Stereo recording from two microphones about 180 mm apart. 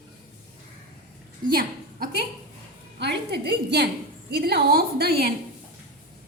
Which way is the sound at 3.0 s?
70° right (ahead or behind).